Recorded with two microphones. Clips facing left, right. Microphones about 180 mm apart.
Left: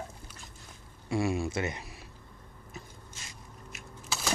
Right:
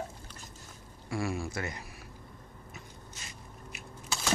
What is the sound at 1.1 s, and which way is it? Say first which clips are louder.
Speech: left 4 dB; 20° left (ahead or behind).